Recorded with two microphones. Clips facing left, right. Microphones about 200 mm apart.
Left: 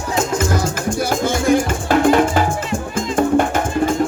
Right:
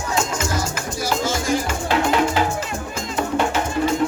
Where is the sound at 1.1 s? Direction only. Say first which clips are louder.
Left 5 dB; 55° left (ahead or behind).